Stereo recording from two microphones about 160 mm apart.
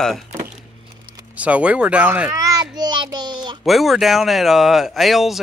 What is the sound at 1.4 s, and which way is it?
A child's voice, 10° right (ahead or behind).